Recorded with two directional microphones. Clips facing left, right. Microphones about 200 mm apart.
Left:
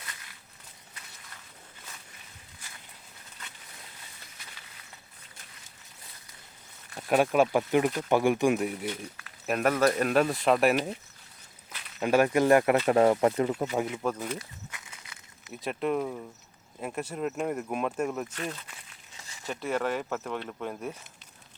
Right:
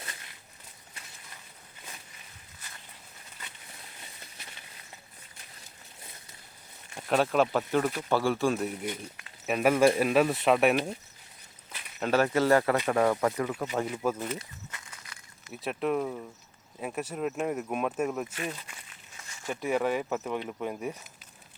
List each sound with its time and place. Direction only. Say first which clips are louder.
7.1 s speech: left 2 dB; 10° left (ahead or behind)
8.9 s speech: left 1 dB; 20° right (ahead or behind)
9.5 s speech: right 2 dB; centre (ahead or behind)
11.9 s speech: left 2 dB; 15° left (ahead or behind)
14.0 s speech: right 1 dB; 5° right (ahead or behind)
15.6 s speech: even; centre (ahead or behind)